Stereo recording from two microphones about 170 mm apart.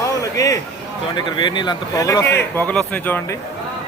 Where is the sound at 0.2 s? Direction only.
20° left (ahead or behind).